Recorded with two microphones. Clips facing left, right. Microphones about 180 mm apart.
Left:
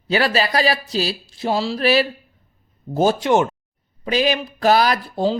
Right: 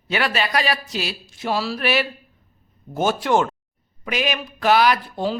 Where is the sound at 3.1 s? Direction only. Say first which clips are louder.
Left 2 dB; 20° left (ahead or behind).